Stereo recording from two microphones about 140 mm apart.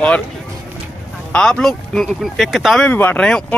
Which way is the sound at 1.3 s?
5° left (ahead or behind).